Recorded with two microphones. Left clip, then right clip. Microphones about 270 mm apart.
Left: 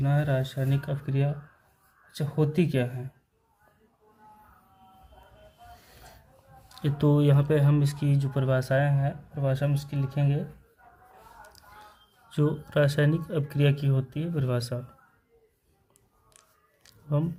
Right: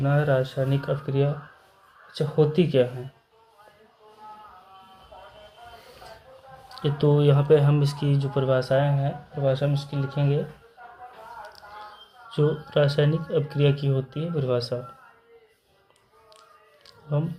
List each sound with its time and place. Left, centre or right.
0.0 s speech: left
6.7 s speech: left
12.3 s speech: left
16.8 s a sound: left